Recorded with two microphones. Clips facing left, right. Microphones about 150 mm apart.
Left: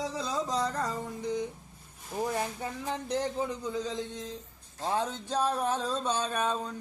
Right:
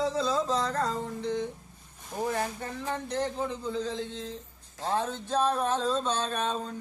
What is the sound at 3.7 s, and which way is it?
Speech, 15° left (ahead or behind).